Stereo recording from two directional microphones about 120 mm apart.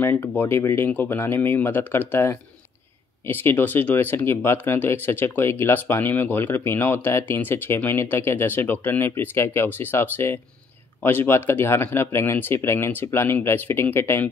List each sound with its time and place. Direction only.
0.0 s speech: 20° left (ahead or behind)